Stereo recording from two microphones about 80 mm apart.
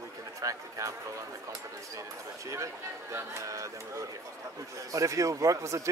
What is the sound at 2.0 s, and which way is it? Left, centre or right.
Speech, right.